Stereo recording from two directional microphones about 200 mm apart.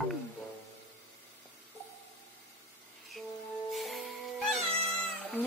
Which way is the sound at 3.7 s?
Centre (ahead or behind).